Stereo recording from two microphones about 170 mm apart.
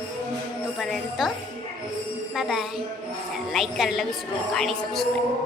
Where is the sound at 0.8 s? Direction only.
Centre (ahead or behind).